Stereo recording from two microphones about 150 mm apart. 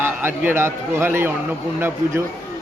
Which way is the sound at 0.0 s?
15° right (ahead or behind).